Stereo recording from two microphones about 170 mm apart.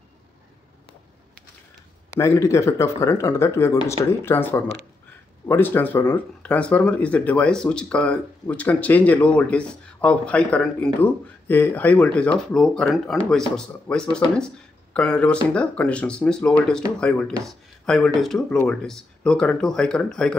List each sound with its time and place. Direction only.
2.0 s speech: 15° left (ahead or behind)